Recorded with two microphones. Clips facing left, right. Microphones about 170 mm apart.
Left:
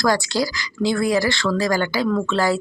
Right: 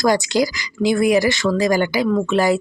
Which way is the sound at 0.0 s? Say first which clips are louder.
Right 3 dB; 20° right (ahead or behind).